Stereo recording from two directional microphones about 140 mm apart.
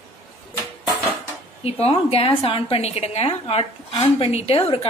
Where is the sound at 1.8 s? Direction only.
45° left (ahead or behind).